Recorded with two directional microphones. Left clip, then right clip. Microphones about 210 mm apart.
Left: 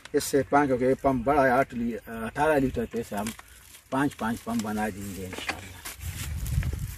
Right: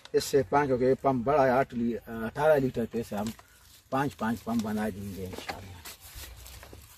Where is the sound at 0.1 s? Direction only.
10° right (ahead or behind).